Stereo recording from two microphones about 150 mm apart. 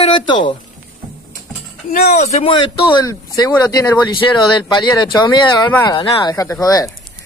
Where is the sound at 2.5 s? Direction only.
35° left (ahead or behind).